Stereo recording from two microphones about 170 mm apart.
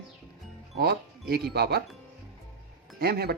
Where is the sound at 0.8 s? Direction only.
70° right (ahead or behind).